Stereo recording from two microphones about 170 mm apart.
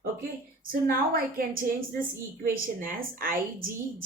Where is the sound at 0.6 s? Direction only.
60° right (ahead or behind).